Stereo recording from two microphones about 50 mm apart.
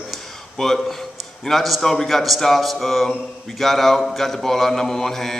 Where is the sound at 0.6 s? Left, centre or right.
Centre.